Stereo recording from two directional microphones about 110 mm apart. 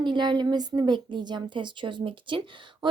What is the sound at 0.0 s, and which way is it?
Speech, 45° right (ahead or behind).